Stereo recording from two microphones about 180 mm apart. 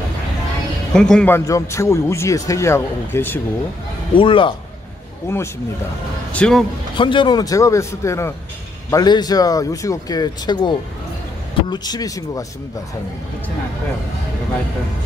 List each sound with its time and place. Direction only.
0.9 s speech: 5° left (ahead or behind)
4.1 s speech: 30° left (ahead or behind)
5.3 s speech: 15° left (ahead or behind)
7.0 s speech: 25° left (ahead or behind)